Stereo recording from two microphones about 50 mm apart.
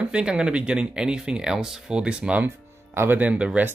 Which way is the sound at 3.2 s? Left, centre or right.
Right.